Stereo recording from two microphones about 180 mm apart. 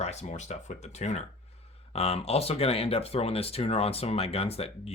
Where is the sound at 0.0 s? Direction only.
40° left (ahead or behind).